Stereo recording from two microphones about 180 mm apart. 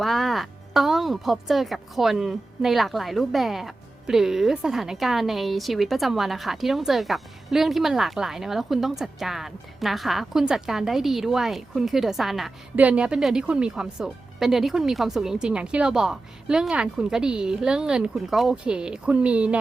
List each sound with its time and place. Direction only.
0.0 s speech: centre (ahead or behind)